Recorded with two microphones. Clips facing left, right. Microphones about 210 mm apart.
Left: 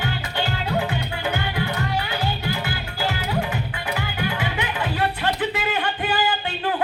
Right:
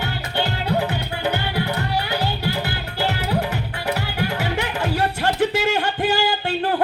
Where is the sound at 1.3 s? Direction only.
40° right (ahead or behind).